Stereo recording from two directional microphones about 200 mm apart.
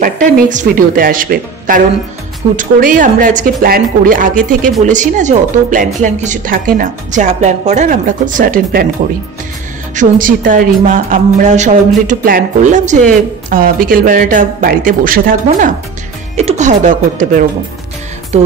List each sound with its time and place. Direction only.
0.0 s speech: 40° right (ahead or behind)
9.9 s speech: 40° right (ahead or behind)
18.3 s music: 35° right (ahead or behind)